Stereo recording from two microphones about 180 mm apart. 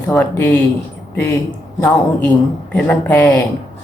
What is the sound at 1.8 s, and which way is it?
A woman's voice, 10° left (ahead or behind).